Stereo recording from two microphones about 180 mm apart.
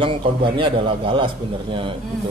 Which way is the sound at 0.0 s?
30° right (ahead or behind).